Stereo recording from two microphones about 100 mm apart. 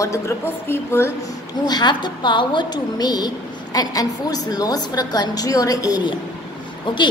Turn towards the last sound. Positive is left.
turn(degrees=50)  # may be behind; listen again after turning